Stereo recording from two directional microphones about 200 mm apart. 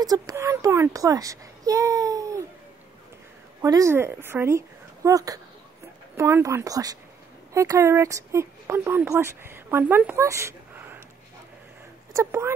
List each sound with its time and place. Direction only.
0.0 s a child's voice: 15° right (ahead or behind)
3.6 s a woman's voice: 15° right (ahead or behind)
12.1 s speech: 15° right (ahead or behind)